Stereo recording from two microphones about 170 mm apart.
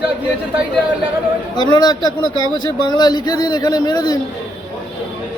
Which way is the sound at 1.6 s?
25° left (ahead or behind).